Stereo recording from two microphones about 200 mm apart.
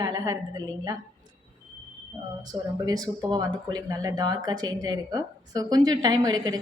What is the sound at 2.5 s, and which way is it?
Speech, 20° right (ahead or behind).